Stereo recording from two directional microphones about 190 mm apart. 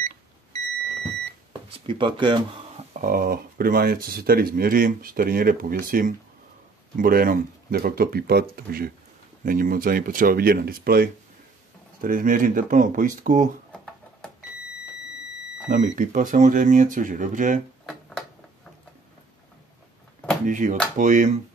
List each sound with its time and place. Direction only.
1.9 s speech: 25° right (ahead or behind)
2.9 s speech: 50° right (ahead or behind)
15.7 s speech: 45° right (ahead or behind)
20.4 s speech: 40° right (ahead or behind)